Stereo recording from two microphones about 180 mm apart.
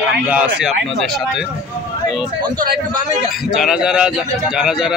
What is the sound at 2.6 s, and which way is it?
Speech, 50° right (ahead or behind).